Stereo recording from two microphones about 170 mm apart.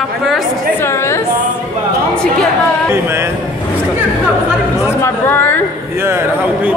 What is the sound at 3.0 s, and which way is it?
Speech, 15° right (ahead or behind).